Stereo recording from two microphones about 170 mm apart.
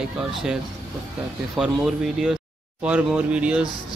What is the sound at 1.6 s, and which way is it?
Speech, centre (ahead or behind).